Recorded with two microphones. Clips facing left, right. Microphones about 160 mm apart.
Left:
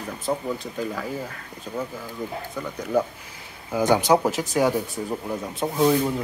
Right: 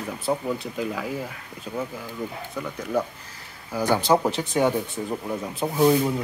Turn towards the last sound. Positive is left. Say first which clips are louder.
# right 1 dB
turn(degrees=0)  # may be behind; listen again after turning